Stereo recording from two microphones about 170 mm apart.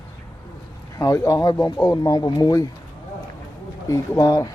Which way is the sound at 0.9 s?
20° left (ahead or behind).